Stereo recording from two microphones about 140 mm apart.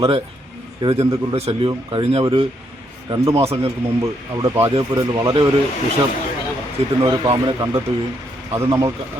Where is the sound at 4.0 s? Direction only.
20° right (ahead or behind).